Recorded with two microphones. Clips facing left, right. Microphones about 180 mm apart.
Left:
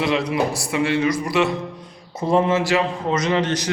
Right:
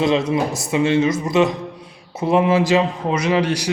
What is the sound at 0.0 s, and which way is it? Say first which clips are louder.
A man's voice: right 3 dB; 25° right (ahead or behind).